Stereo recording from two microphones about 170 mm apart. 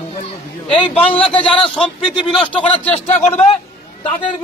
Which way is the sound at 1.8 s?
5° left (ahead or behind).